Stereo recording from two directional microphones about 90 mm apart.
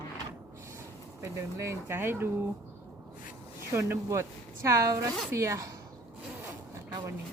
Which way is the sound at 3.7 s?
30° right (ahead or behind).